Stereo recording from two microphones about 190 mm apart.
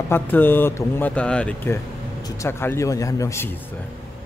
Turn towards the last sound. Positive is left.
turn(degrees=15)  # may be behind; listen again after turning